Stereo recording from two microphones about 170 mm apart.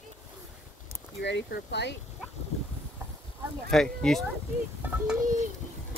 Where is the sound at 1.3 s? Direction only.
90° left.